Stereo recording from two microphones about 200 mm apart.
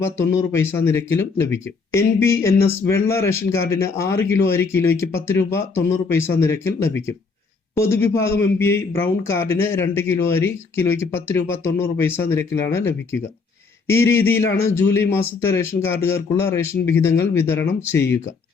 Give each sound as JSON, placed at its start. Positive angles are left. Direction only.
{"t": 0.0, "sound": "speech", "side_deg": 10}